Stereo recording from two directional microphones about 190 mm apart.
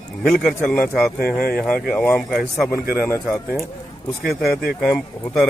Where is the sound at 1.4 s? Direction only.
50° left (ahead or behind).